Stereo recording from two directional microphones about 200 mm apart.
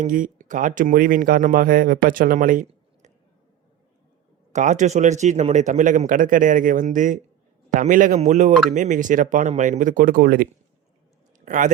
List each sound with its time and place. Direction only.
0.0 s speech: 40° right (ahead or behind)
4.5 s speech: 35° right (ahead or behind)
11.3 s a sound: 40° right (ahead or behind)